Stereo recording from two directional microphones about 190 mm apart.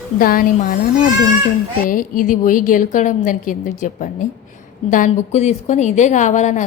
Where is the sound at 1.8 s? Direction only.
45° left (ahead or behind).